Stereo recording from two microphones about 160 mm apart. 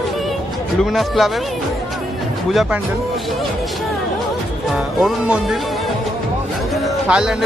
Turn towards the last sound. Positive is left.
turn(degrees=-5)  # may be behind; listen again after turning